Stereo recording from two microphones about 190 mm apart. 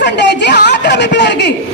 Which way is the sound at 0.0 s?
65° left (ahead or behind).